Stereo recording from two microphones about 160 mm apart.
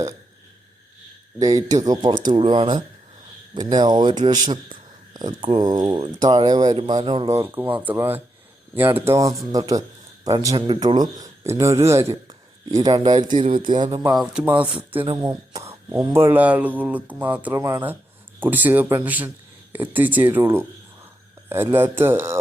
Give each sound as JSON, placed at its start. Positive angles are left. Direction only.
{"t": 1.4, "sound": "speech", "side_deg": -20}
{"t": 7.3, "sound": "a man's voice", "side_deg": -15}
{"t": 14.1, "sound": "speech", "side_deg": -5}
{"t": 14.9, "sound": "speech", "side_deg": -30}